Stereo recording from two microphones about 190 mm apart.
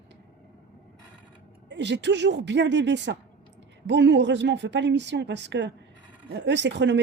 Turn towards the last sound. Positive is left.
turn(degrees=-65)  # may be behind; listen again after turning